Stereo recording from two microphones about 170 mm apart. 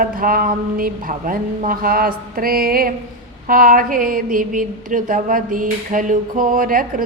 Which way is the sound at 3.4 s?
55° right (ahead or behind).